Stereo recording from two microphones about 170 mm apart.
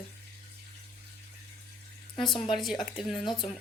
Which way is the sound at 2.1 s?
30° left (ahead or behind).